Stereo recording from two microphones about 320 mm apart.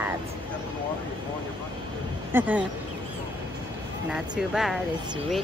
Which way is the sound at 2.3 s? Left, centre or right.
Centre.